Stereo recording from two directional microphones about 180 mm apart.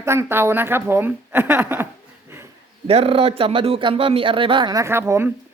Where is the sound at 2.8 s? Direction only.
35° right (ahead or behind).